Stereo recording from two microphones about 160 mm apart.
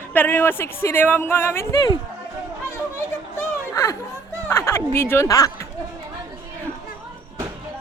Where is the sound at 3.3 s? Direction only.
20° left (ahead or behind).